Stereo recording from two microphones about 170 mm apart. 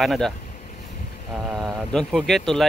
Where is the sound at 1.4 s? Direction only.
Centre (ahead or behind).